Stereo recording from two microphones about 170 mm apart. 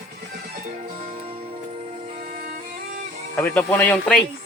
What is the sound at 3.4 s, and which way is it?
Speech, 10° left (ahead or behind).